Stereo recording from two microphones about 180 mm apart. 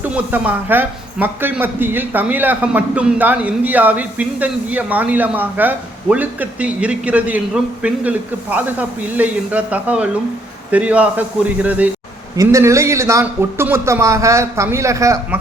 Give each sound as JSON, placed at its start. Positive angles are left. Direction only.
{"t": 0.0, "sound": "a man's voice", "side_deg": -10}